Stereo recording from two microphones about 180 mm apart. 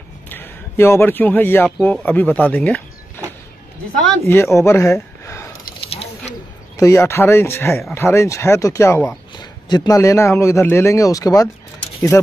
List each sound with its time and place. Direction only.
0.3 s a man's voice: 15° left (ahead or behind)
4.3 s speech: 15° left (ahead or behind)
5.9 s a sound: 35° left (ahead or behind)
6.8 s speech: 15° left (ahead or behind)